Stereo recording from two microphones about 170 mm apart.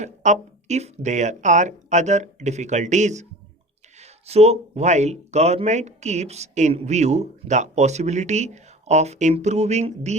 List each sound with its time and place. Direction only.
0.0 s speech: 45° right (ahead or behind)